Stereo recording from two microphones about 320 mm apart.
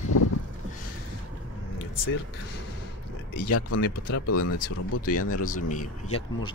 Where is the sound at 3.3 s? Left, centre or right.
Left.